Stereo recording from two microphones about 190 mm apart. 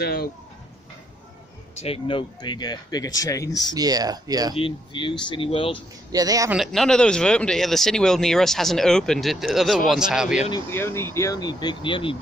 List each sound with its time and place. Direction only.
0.0 s speech: 55° left (ahead or behind)
1.8 s speech: 30° left (ahead or behind)
3.7 s speech: 20° right (ahead or behind)
4.6 s speech: 25° left (ahead or behind)
6.1 s speech: 20° right (ahead or behind)
6.5 s speech: centre (ahead or behind)
10.5 s speech: 15° left (ahead or behind)